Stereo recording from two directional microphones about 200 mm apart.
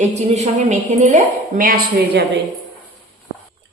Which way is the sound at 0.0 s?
35° right (ahead or behind).